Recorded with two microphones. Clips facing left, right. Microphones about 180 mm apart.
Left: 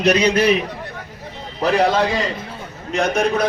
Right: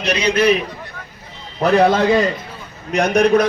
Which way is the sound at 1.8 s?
55° right (ahead or behind).